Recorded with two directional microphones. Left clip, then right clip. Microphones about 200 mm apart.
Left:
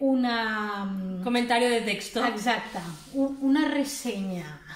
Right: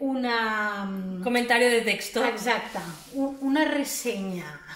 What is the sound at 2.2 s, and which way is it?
A woman's voice, 15° left (ahead or behind).